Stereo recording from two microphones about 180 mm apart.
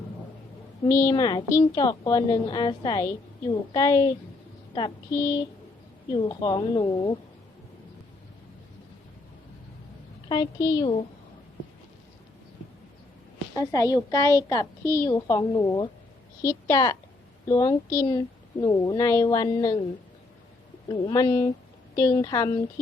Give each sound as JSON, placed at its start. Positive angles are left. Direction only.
{"t": 0.9, "sound": "a woman's voice", "side_deg": 15}
{"t": 10.2, "sound": "a woman's voice", "side_deg": 20}
{"t": 13.6, "sound": "a woman's voice", "side_deg": 20}
{"t": 20.8, "sound": "a woman's voice", "side_deg": 25}